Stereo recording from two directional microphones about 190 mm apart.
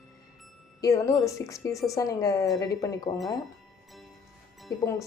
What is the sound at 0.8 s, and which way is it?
Speech, 15° left (ahead or behind).